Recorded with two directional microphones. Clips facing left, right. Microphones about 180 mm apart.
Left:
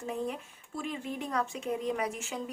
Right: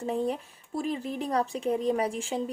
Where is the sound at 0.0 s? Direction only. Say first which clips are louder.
Right 6 dB; 30° right (ahead or behind).